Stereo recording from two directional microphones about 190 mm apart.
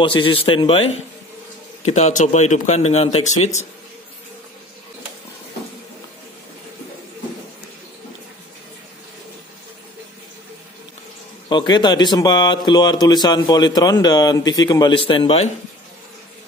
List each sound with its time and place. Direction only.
0.0 s speech: 25° left (ahead or behind)
11.4 s speech: 25° left (ahead or behind)